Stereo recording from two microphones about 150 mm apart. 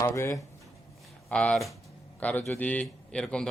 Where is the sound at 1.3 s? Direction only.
5° left (ahead or behind).